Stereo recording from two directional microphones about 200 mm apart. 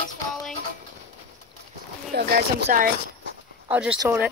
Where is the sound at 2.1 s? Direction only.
55° right (ahead or behind).